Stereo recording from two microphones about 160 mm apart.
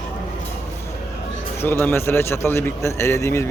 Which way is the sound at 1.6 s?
15° left (ahead or behind).